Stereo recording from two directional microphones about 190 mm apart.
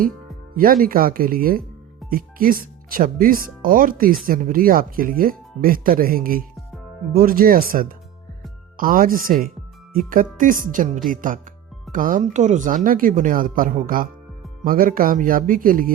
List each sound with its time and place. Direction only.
0.5 s speech: 50° right (ahead or behind)